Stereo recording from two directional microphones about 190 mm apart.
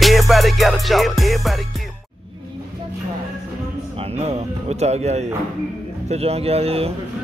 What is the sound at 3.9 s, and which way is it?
Music, 35° right (ahead or behind).